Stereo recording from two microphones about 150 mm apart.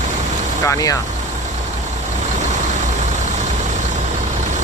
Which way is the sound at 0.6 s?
20° left (ahead or behind).